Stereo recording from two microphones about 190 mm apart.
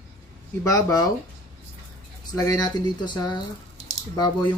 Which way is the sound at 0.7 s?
15° left (ahead or behind).